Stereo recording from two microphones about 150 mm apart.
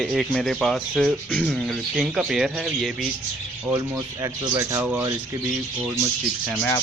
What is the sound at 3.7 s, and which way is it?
Speech, 25° right (ahead or behind).